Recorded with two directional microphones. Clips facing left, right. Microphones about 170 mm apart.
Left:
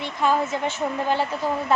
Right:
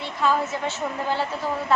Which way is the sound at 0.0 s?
15° left (ahead or behind).